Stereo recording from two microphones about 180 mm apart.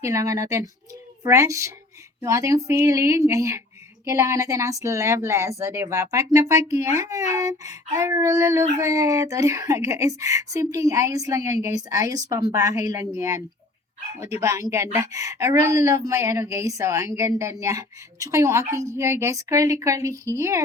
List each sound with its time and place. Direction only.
0.0 s speech: 15° right (ahead or behind)
14.4 s speech: 15° right (ahead or behind)